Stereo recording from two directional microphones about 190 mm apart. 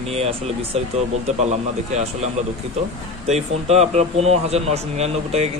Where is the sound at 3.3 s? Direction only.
35° right (ahead or behind).